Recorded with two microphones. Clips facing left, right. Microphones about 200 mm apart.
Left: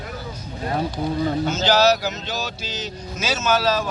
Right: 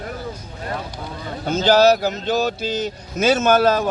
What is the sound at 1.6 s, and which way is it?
Speech, 55° right (ahead or behind).